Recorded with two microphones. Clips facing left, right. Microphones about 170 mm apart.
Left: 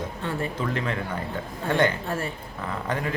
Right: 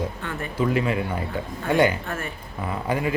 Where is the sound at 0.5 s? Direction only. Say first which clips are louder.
Right 5 dB; 10° right (ahead or behind).